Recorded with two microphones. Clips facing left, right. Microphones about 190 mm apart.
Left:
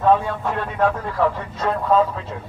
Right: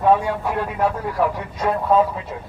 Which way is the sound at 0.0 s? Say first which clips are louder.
Even; 10° right (ahead or behind).